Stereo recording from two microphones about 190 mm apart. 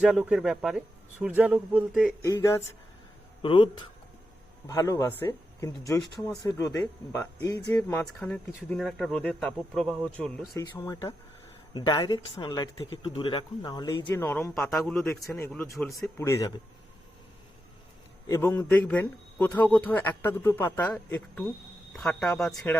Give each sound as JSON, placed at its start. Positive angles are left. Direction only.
{"t": 0.0, "sound": "speech", "side_deg": -5}
{"t": 2.2, "sound": "a man's voice", "side_deg": 15}
{"t": 3.4, "sound": "a man's voice", "side_deg": 25}
{"t": 6.0, "sound": "speech", "side_deg": 0}
{"t": 6.4, "sound": "a man's voice", "side_deg": 15}
{"t": 10.5, "sound": "speech", "side_deg": 20}
{"t": 14.1, "sound": "a man's voice", "side_deg": 10}
{"t": 18.3, "sound": "a man's voice", "side_deg": 15}